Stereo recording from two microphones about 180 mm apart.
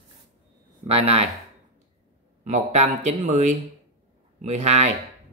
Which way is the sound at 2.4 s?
40° right (ahead or behind).